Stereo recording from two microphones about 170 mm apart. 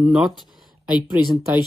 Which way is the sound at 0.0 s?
5° right (ahead or behind).